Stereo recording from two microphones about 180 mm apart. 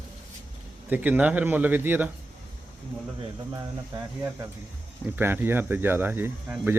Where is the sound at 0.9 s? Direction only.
10° right (ahead or behind).